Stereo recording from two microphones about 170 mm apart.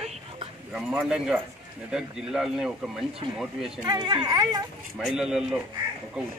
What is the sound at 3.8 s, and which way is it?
Speech, 25° right (ahead or behind).